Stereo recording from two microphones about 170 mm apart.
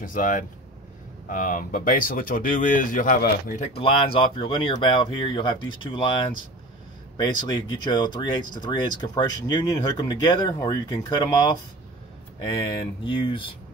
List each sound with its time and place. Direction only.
0.0 s speech: 50° left (ahead or behind)
3.7 s speech: 30° left (ahead or behind)
13.0 s speech: 30° left (ahead or behind)